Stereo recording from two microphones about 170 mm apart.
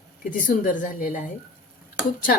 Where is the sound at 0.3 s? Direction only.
50° left (ahead or behind).